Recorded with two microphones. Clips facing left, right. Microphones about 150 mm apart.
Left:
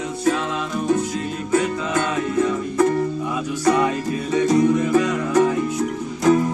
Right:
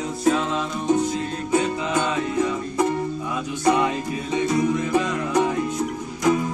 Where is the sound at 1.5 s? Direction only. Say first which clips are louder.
Left 2 dB; 15° right (ahead or behind).